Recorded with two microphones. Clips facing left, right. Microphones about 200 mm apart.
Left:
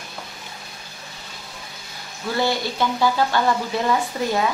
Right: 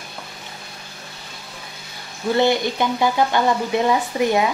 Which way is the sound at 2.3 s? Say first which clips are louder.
Right 4 dB; 20° right (ahead or behind).